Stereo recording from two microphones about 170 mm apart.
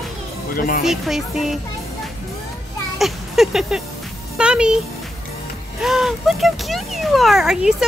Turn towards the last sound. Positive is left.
turn(degrees=0)  # may be behind; listen again after turning